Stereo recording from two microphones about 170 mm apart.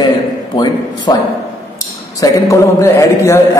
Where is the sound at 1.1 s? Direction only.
25° left (ahead or behind).